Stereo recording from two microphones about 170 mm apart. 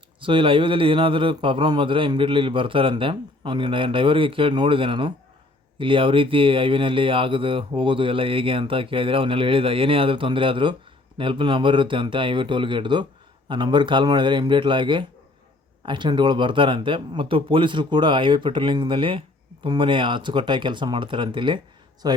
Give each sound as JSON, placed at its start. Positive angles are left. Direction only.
{"t": 0.2, "sound": "a man's voice", "side_deg": -30}